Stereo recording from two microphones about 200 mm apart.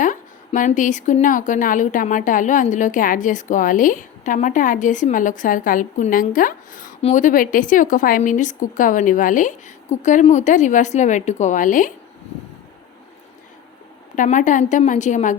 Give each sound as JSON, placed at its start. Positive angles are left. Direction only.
{"t": 0.0, "sound": "a woman's voice", "side_deg": 40}
{"t": 14.2, "sound": "a woman's voice", "side_deg": 40}